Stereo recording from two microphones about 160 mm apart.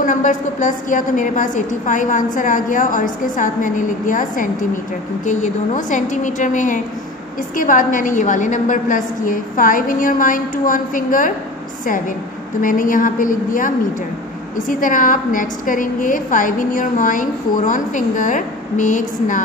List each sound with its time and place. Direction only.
0.0 s a woman's voice: 55° left (ahead or behind)
12.6 s a woman's voice: 60° left (ahead or behind)